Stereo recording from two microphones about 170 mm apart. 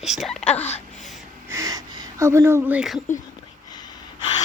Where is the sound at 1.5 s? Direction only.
20° right (ahead or behind).